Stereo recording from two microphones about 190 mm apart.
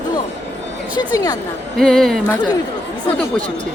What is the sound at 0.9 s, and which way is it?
Speech, 20° left (ahead or behind).